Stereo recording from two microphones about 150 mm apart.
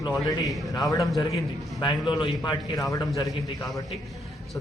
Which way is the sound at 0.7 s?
25° left (ahead or behind).